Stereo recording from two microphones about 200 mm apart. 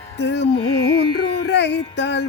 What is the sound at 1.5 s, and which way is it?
Music, 60° left (ahead or behind).